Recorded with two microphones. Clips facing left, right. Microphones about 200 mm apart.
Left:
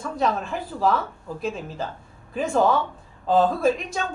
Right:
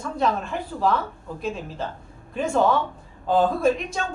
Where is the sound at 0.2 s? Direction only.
Centre (ahead or behind).